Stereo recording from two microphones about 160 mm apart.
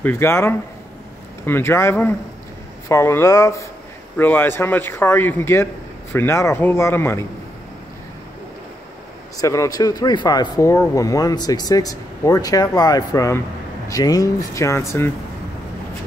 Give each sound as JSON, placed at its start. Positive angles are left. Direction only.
{"t": 0.0, "sound": "speech", "side_deg": 15}
{"t": 9.4, "sound": "speech", "side_deg": 20}